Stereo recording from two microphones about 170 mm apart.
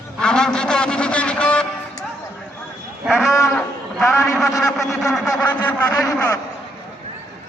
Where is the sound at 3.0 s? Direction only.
5° right (ahead or behind).